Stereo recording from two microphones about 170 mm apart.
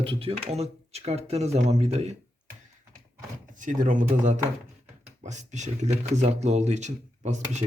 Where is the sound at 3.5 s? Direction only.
50° right (ahead or behind).